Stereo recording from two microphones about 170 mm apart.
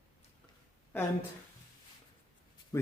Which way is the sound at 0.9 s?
15° left (ahead or behind).